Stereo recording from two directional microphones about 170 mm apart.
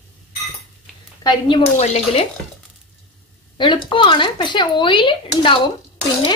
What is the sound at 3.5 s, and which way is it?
Speech, 30° left (ahead or behind).